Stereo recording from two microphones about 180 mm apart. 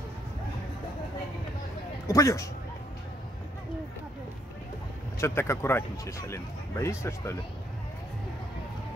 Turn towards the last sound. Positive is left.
turn(degrees=15)  # may be behind; listen again after turning